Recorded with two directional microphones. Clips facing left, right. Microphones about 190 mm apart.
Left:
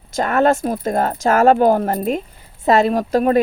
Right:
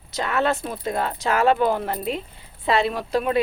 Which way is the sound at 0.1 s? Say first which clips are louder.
Left 7 dB; 50° left (ahead or behind).